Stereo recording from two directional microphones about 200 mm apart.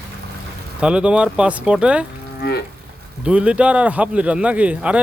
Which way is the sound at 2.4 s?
55° left (ahead or behind).